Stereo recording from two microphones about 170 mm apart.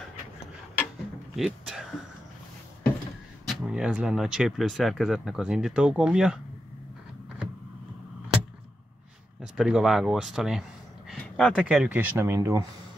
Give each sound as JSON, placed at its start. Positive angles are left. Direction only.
{"t": 1.3, "sound": "speech", "side_deg": 0}
{"t": 3.4, "sound": "speech", "side_deg": -5}
{"t": 9.4, "sound": "speech", "side_deg": -5}
{"t": 11.1, "sound": "a sound", "side_deg": 5}
{"t": 11.6, "sound": "speech", "side_deg": -5}